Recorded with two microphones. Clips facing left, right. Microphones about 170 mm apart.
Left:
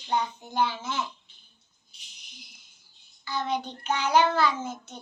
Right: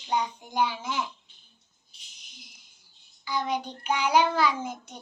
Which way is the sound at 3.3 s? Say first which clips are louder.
Even; 10° right (ahead or behind).